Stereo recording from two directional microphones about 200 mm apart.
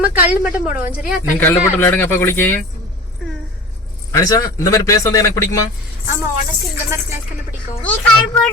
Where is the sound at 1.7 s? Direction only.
10° left (ahead or behind).